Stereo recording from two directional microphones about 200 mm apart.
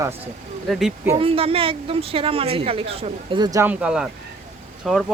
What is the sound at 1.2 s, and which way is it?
Speech, 30° right (ahead or behind).